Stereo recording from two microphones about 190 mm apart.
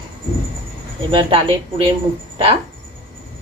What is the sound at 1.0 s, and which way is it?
Speech, 25° right (ahead or behind).